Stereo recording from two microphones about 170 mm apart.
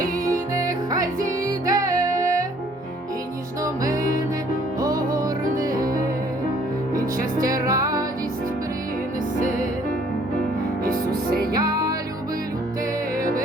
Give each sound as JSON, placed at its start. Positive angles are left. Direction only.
{"t": 0.3, "sound": "music", "side_deg": -20}
{"t": 3.6, "sound": "music", "side_deg": -20}
{"t": 11.5, "sound": "music", "side_deg": -20}